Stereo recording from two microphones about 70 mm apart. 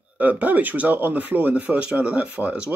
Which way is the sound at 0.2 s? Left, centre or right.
Right.